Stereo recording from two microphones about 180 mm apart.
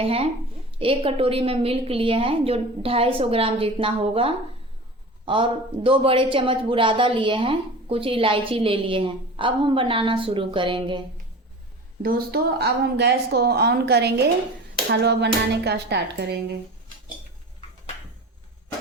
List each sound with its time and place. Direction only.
0.0 s a woman's voice: 30° right (ahead or behind)
12.0 s a woman's voice: 55° right (ahead or behind)